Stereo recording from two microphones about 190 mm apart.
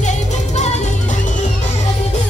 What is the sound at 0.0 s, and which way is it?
Music, 35° left (ahead or behind).